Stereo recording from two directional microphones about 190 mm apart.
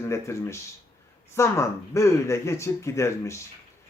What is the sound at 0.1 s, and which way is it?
Speech, 15° left (ahead or behind).